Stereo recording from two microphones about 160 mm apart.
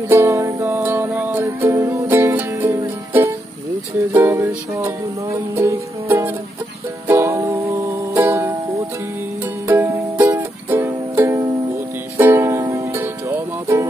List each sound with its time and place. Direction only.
0.1 s music: 15° right (ahead or behind)